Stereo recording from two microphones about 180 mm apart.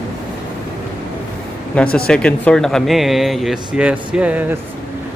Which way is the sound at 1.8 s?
5° left (ahead or behind).